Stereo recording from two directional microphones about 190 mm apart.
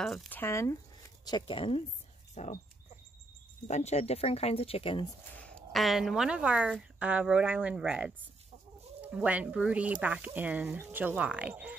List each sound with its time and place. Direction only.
0.0 s speech: centre (ahead or behind)
0.4 s speech: 15° left (ahead or behind); by 2.6 s 35° left (ahead or behind)
3.6 s speech: 35° left (ahead or behind)
5.4 s speech: 5° left (ahead or behind)